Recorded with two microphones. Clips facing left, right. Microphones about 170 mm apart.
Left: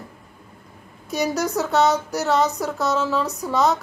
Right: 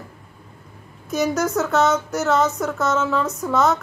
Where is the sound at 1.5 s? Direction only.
Centre (ahead or behind).